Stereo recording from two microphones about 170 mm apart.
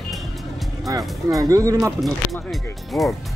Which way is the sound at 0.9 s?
20° right (ahead or behind).